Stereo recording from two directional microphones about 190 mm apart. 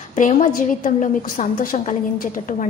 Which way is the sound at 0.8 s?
40° left (ahead or behind).